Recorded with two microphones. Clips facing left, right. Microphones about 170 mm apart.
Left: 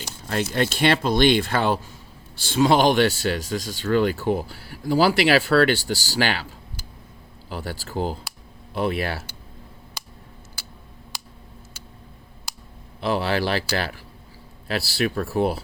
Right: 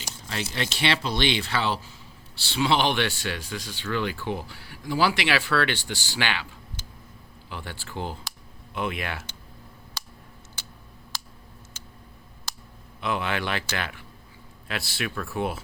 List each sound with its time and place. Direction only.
0.3 s speech: 50° left (ahead or behind)
7.5 s speech: 40° left (ahead or behind)
12.5 s a sound: 10° left (ahead or behind)
13.0 s speech: 35° left (ahead or behind)